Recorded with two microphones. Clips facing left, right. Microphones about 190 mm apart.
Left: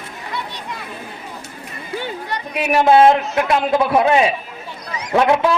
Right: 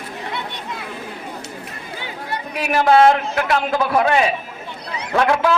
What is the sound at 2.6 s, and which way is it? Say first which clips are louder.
A man's voice: left 2 dB; 20° left (ahead or behind).